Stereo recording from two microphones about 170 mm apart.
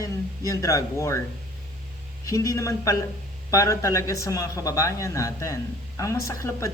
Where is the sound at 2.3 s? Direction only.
20° left (ahead or behind).